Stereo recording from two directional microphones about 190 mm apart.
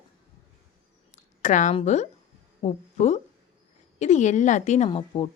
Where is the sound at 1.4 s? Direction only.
40° left (ahead or behind).